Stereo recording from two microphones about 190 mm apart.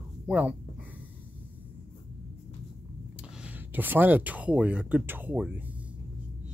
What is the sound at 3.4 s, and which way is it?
Speech, 10° right (ahead or behind).